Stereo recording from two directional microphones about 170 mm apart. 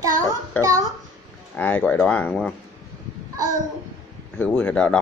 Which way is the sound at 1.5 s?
10° left (ahead or behind).